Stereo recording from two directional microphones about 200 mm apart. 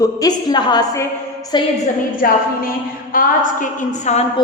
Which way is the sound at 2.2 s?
45° left (ahead or behind).